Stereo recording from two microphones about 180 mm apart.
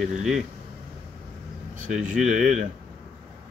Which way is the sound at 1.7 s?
45° right (ahead or behind).